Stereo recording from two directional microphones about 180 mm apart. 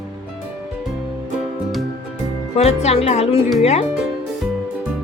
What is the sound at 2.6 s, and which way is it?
Speech, 35° left (ahead or behind).